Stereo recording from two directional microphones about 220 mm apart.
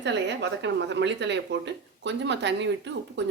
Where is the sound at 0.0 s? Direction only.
55° right (ahead or behind).